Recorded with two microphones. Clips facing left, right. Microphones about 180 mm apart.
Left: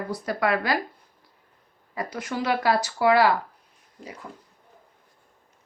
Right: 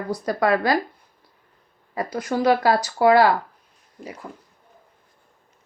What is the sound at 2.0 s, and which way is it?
Speech, 35° right (ahead or behind).